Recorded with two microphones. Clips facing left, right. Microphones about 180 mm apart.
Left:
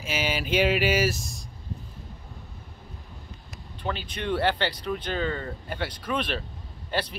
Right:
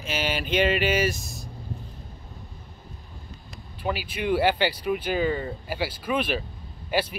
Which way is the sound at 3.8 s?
5° right (ahead or behind).